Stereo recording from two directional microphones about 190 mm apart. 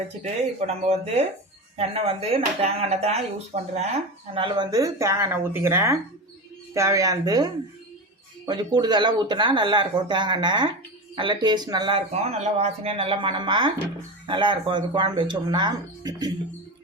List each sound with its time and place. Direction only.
0.7 s a woman's voice: 35° right (ahead or behind)